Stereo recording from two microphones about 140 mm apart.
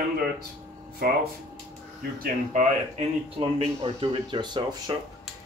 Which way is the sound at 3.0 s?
45° right (ahead or behind).